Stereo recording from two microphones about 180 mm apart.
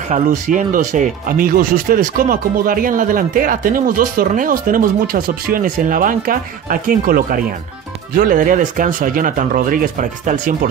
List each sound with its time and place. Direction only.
0.1 s speech: 45° right (ahead or behind)